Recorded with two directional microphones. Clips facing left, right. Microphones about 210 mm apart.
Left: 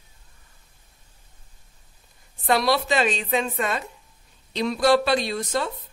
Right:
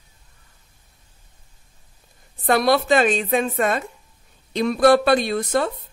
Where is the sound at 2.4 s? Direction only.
50° right (ahead or behind).